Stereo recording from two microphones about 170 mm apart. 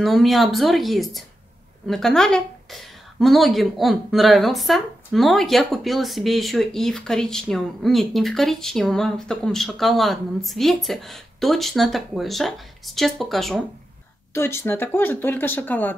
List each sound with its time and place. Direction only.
0.0 s a woman's voice: centre (ahead or behind)
14.3 s speech: 15° left (ahead or behind)